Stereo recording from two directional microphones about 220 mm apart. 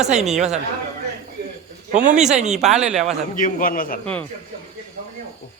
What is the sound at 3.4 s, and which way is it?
Speech, 40° left (ahead or behind).